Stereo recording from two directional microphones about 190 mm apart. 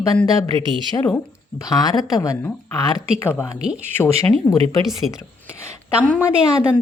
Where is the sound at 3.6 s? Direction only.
5° right (ahead or behind).